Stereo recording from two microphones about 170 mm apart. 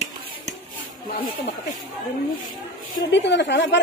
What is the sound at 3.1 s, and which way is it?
Speech, 90° left.